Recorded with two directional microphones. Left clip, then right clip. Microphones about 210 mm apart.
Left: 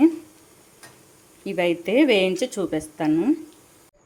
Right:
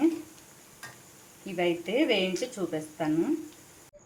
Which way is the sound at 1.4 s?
50° left (ahead or behind).